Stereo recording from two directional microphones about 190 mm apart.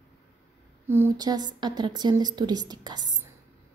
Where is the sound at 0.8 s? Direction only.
15° right (ahead or behind).